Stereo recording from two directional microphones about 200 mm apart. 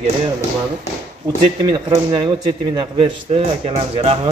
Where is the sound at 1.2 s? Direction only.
20° right (ahead or behind).